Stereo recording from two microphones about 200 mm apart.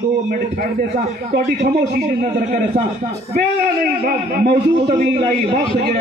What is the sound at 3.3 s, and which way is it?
A man's voice, 45° right (ahead or behind).